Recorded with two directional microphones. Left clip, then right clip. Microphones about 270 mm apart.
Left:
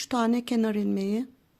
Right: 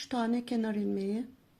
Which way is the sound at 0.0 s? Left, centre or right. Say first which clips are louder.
Left 6 dB; left.